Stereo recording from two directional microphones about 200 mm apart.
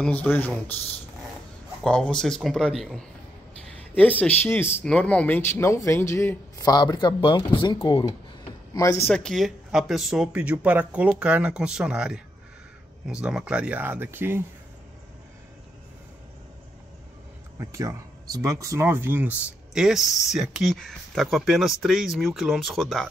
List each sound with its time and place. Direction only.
0.0 s speech: 10° left (ahead or behind)
1.8 s speech: 5° left (ahead or behind)
9.2 s speech: centre (ahead or behind)
17.6 s speech: 15° right (ahead or behind); by 23.0 s centre (ahead or behind)